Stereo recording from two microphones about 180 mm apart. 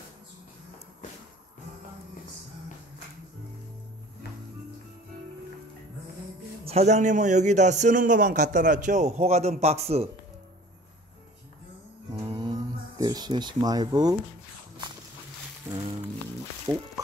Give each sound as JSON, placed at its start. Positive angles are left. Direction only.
{"t": 6.6, "sound": "a man's voice", "side_deg": -35}
{"t": 12.2, "sound": "a sound", "side_deg": -25}
{"t": 15.7, "sound": "music", "side_deg": -25}